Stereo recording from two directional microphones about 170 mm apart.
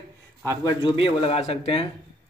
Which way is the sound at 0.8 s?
35° left (ahead or behind).